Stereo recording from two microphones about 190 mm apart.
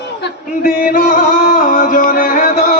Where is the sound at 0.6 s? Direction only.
50° left (ahead or behind).